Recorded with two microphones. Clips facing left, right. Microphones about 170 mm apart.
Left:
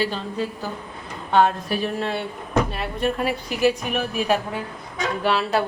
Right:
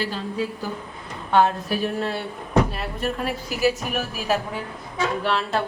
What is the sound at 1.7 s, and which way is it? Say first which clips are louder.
A woman's voice: even; 5° right (ahead or behind).